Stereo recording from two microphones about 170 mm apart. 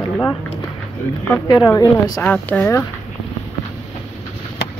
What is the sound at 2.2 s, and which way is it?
Speech, 10° left (ahead or behind).